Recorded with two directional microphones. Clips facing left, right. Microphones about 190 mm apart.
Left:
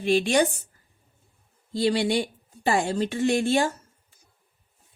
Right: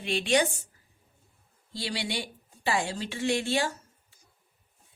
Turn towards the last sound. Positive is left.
turn(degrees=50)  # may be behind; listen again after turning